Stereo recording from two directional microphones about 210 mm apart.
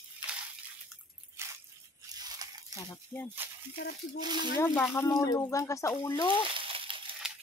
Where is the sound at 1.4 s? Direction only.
10° right (ahead or behind).